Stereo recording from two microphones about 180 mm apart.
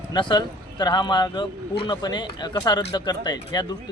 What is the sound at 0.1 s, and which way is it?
Speech, 25° left (ahead or behind).